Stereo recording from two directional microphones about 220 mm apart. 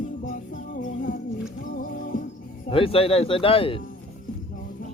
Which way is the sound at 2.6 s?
25° left (ahead or behind).